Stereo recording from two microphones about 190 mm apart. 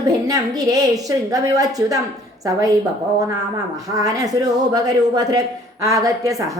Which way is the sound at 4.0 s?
20° right (ahead or behind).